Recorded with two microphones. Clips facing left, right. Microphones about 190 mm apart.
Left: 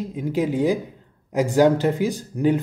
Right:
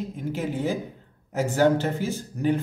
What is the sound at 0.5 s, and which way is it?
Speech, 15° left (ahead or behind).